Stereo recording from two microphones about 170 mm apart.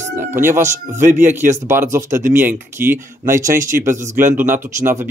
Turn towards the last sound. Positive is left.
turn(degrees=-15)  # may be behind; listen again after turning